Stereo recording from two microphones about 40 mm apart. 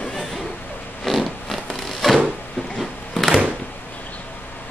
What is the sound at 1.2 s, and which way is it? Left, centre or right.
Zipper, centre.